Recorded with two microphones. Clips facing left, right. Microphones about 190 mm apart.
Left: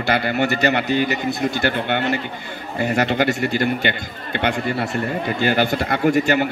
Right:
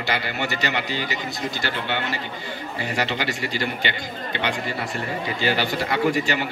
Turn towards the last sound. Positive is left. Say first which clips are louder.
# left 5 dB
turn(degrees=50)  # may be behind; listen again after turning